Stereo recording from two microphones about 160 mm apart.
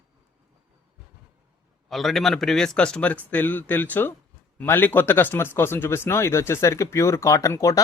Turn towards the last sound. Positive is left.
turn(degrees=20)  # may be behind; listen again after turning